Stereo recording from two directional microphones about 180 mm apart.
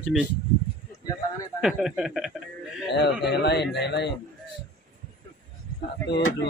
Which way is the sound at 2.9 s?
70° left (ahead or behind).